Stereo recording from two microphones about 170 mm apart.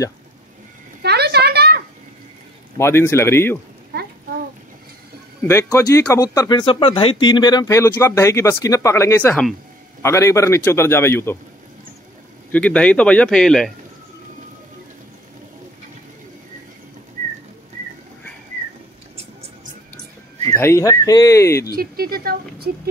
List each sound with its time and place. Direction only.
1.0 s a sound: 75° right (ahead or behind)
2.8 s speech: 15° left (ahead or behind)
5.5 s speech: 15° left (ahead or behind)
10.0 s speech: 15° left (ahead or behind)
12.4 s speech: 10° left (ahead or behind)
20.4 s speech: 15° left (ahead or behind)
21.7 s a woman's voice: 60° right (ahead or behind)